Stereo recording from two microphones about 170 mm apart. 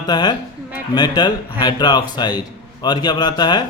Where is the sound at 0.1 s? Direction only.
25° left (ahead or behind).